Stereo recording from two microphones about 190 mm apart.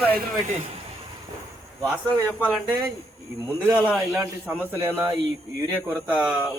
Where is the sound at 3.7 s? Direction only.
5° right (ahead or behind).